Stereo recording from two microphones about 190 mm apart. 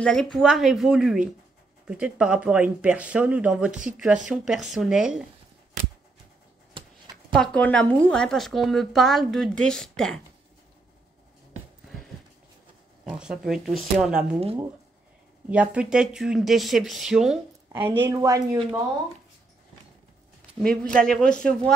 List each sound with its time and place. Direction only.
0.0 s speech: 5° left (ahead or behind)
7.3 s speech: 5° left (ahead or behind)
13.2 s speech: 5° right (ahead or behind)
15.5 s speech: 5° right (ahead or behind)
18.0 s speech: 15° right (ahead or behind)
20.6 s speech: 5° left (ahead or behind)